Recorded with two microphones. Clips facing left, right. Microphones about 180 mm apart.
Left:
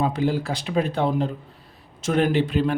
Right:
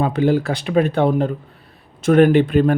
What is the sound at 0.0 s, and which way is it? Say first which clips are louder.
Speech: right 6 dB; 65° right (ahead or behind).